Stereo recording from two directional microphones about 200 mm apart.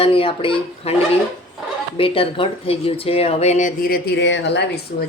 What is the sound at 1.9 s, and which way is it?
Speech, 25° left (ahead or behind).